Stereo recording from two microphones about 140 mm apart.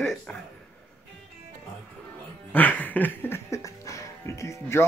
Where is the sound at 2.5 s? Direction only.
10° left (ahead or behind).